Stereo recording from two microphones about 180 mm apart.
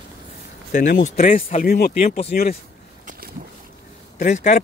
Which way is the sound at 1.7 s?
60° left (ahead or behind).